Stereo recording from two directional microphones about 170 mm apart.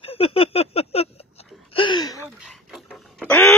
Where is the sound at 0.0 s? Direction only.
35° left (ahead or behind).